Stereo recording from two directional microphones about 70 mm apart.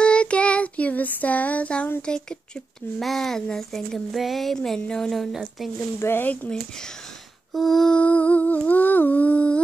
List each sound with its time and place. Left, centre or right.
0.0 s child singing: centre
2.0 s speech: centre
5.9 s speech: left
6.2 s humming: left
6.7 s speech: centre
7.5 s a sound: centre
8.0 s humming: left